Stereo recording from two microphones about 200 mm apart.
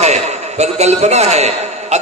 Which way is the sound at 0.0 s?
35° right (ahead or behind).